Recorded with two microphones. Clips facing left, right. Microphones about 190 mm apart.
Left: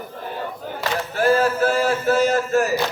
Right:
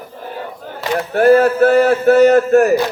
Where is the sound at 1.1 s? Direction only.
60° right (ahead or behind).